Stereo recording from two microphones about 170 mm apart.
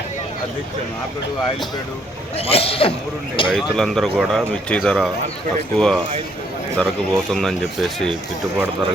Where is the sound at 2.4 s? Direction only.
35° left (ahead or behind).